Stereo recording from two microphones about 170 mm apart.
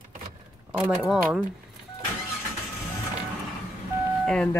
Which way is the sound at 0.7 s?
Centre (ahead or behind).